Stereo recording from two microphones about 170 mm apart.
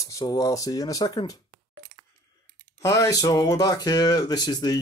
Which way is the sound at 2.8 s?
20° left (ahead or behind).